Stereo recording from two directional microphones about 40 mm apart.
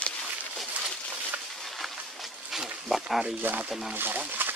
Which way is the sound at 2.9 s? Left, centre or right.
Centre.